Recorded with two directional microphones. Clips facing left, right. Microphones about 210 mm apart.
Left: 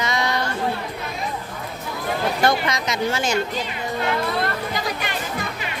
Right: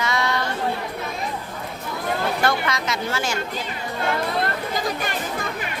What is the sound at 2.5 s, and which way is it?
Speech, 20° left (ahead or behind).